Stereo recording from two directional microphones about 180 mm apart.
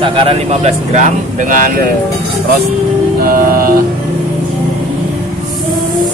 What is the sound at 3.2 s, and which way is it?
Music, 55° right (ahead or behind).